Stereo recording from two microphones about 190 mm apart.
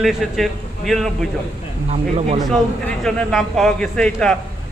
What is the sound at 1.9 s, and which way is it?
Speech, 35° right (ahead or behind).